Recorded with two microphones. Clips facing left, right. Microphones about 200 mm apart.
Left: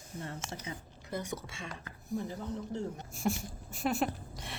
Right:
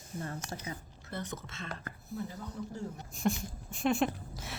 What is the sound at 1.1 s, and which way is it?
Speech, 10° left (ahead or behind).